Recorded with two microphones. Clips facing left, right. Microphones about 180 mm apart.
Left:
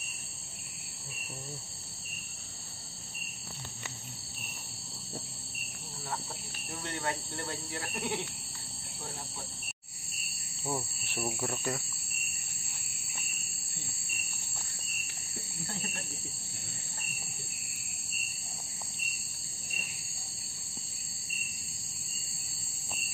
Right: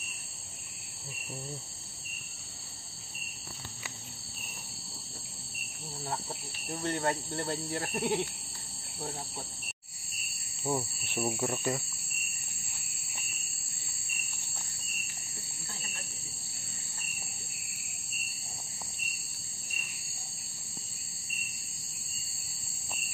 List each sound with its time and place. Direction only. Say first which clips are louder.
6.8 s speech: right 5 dB; 40° right (ahead or behind)
10.6 s speech: right 4 dB; centre (ahead or behind)